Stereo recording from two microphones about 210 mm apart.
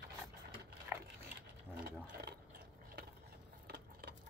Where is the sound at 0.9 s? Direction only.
10° right (ahead or behind).